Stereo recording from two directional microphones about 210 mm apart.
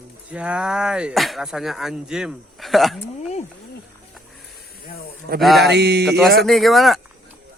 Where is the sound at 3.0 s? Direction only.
30° left (ahead or behind).